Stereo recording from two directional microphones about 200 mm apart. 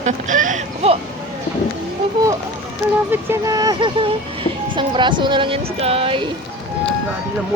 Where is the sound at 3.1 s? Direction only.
15° right (ahead or behind).